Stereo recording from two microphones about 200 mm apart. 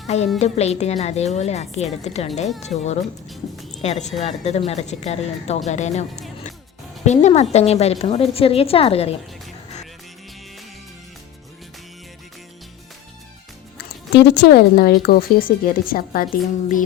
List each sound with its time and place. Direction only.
0.3 s a woman's voice: 30° left (ahead or behind)
13.7 s a woman's voice: 60° left (ahead or behind)